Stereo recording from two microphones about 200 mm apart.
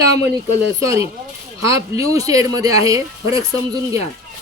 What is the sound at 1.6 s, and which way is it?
Speech, 15° right (ahead or behind).